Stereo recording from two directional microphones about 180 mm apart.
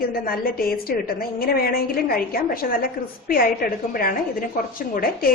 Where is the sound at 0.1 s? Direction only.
55° left (ahead or behind).